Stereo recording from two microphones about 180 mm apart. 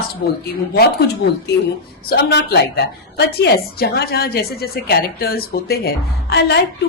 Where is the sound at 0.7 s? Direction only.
60° left (ahead or behind).